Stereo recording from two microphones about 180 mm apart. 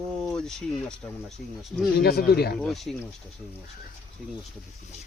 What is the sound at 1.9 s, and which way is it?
Speech, 60° left (ahead or behind).